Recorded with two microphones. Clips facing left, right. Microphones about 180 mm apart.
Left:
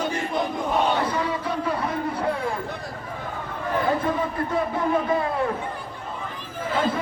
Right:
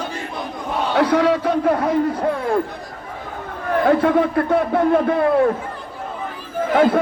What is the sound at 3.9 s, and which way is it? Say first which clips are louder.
A man's voice: right 11 dB; 75° right (ahead or behind).